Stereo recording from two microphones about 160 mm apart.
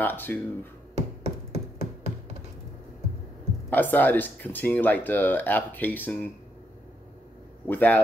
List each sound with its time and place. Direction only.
0.0 s speech: 15° left (ahead or behind)
0.9 s a sound: 40° right (ahead or behind)
3.7 s speech: 10° left (ahead or behind)
7.6 s speech: 10° left (ahead or behind)